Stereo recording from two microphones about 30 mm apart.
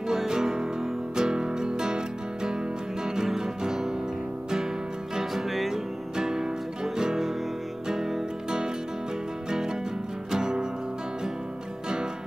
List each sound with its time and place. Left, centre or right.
0.1 s music: centre
3.3 s music: centre
5.3 s music: centre
5.7 s music: centre
8.5 s music: right
10.3 s music: right